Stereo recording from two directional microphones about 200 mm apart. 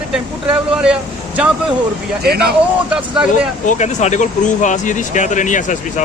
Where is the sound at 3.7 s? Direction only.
35° left (ahead or behind).